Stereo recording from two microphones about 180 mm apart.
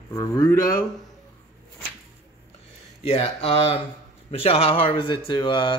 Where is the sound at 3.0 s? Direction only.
35° left (ahead or behind).